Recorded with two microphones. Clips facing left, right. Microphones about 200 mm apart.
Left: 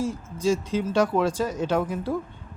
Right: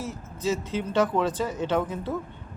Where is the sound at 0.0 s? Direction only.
10° left (ahead or behind).